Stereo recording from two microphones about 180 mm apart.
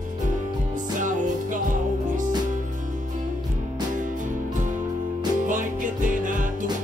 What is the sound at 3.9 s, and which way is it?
Music, 45° right (ahead or behind).